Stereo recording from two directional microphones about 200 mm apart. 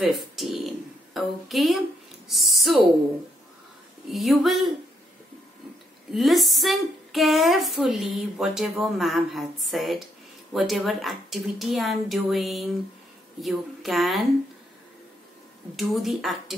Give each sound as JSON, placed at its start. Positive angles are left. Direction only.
{"t": 0.0, "sound": "a sound", "side_deg": 0}
{"t": 2.2, "sound": "speech", "side_deg": 0}
{"t": 4.1, "sound": "speech", "side_deg": 0}
{"t": 6.1, "sound": "speech", "side_deg": 0}
{"t": 15.7, "sound": "speech", "side_deg": 0}